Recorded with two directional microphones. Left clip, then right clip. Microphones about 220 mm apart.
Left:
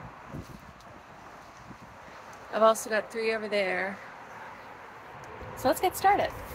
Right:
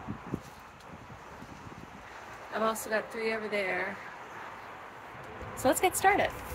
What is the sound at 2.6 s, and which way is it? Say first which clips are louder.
Speech: left 7 dB; 50° left (ahead or behind).